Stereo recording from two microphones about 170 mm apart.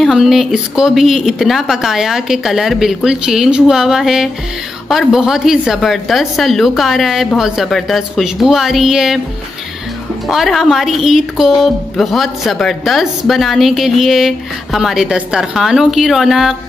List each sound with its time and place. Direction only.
0.0 s speech: centre (ahead or behind)
10.2 s speech: centre (ahead or behind)